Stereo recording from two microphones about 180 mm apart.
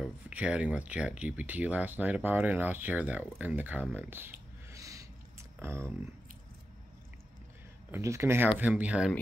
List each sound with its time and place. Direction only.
0.0 s speech: 5° right (ahead or behind)
4.7 s a sound: 15° right (ahead or behind)
5.6 s speech: 15° right (ahead or behind)
7.9 s speech: 15° right (ahead or behind)